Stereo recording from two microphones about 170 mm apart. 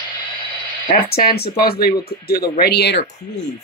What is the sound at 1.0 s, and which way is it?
Speech, 65° left (ahead or behind).